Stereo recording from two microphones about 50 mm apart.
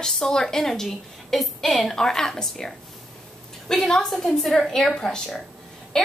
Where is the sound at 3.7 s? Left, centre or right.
Centre.